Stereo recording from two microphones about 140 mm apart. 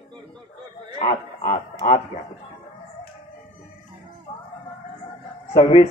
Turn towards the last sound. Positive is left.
turn(degrees=45)  # may be behind; listen again after turning